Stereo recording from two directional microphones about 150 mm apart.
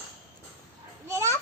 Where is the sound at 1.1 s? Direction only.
20° right (ahead or behind).